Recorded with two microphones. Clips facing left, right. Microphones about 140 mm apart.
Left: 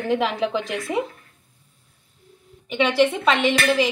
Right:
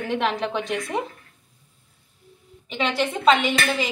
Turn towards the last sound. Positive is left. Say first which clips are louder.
# left 4 dB
turn(degrees=0)  # may be behind; listen again after turning